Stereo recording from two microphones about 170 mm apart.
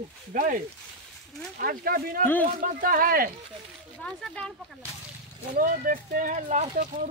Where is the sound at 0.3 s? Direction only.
55° right (ahead or behind).